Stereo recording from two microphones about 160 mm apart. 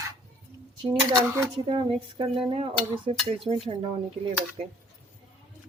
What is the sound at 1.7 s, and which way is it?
Speech, 30° right (ahead or behind).